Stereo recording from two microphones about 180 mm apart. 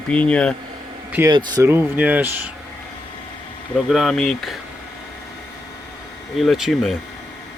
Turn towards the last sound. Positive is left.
turn(degrees=0)  # may be behind; listen again after turning